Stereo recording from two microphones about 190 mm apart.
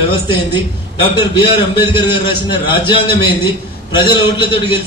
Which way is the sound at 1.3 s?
25° left (ahead or behind).